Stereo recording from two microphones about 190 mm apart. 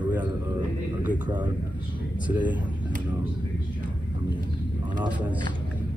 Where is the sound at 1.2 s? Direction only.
25° right (ahead or behind).